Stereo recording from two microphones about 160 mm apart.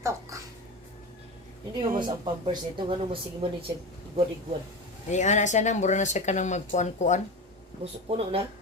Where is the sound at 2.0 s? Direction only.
30° right (ahead or behind).